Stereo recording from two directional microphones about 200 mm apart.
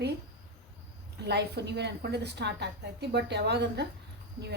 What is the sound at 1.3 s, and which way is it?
A woman's voice, 55° right (ahead or behind).